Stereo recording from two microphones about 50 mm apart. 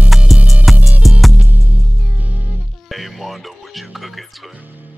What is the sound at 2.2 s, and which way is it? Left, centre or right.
Music, right.